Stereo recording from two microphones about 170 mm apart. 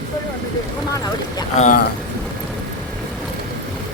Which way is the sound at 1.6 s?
50° left (ahead or behind).